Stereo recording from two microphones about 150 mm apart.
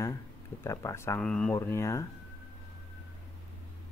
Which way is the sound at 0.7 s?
20° left (ahead or behind).